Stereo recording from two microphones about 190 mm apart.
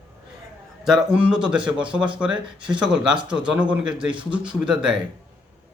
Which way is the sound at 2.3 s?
25° right (ahead or behind).